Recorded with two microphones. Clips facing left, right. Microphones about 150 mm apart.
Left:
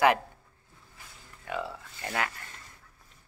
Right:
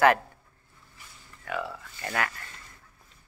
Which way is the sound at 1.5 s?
20° left (ahead or behind).